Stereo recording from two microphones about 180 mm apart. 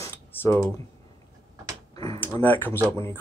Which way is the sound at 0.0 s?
15° left (ahead or behind).